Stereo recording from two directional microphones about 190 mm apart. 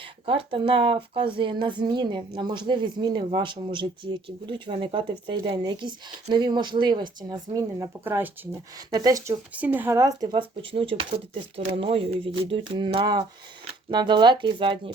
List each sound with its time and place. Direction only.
0.3 s speech: 30° right (ahead or behind)